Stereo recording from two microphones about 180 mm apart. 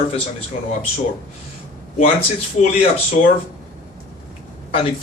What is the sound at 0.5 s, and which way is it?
Speech, 40° left (ahead or behind).